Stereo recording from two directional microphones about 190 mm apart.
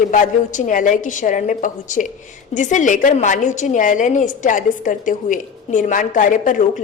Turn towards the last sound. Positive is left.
turn(degrees=40)  # may be behind; listen again after turning